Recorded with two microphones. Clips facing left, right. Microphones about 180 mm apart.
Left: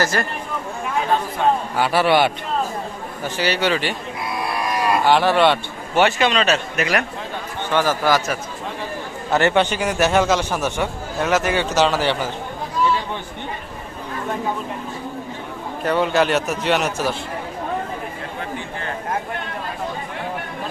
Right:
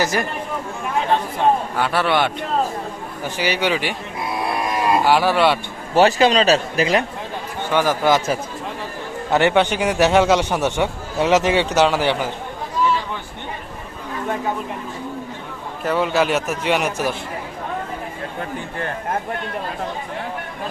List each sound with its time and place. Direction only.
0.0 s a man's voice: 15° right (ahead or behind)
1.7 s a man's voice: 5° left (ahead or behind)
3.2 s a man's voice: 10° right (ahead or behind)
5.0 s a man's voice: 5° right (ahead or behind)
5.9 s speech: 35° right (ahead or behind)
7.7 s a man's voice: 15° right (ahead or behind)
15.8 s a man's voice: 5° right (ahead or behind)